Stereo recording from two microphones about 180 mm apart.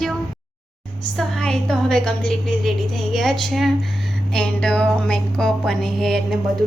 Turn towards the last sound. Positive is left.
turn(degrees=0)  # may be behind; listen again after turning